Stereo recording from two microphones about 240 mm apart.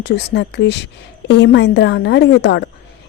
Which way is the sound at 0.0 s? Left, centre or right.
Left.